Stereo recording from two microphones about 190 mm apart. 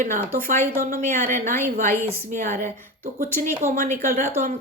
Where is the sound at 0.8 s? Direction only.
50° right (ahead or behind).